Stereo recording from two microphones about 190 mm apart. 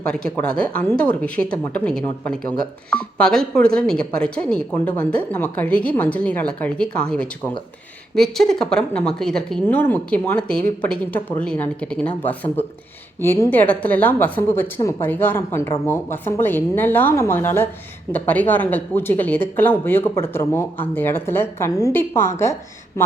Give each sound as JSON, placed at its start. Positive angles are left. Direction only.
{"t": 0.3, "sound": "speech", "side_deg": 5}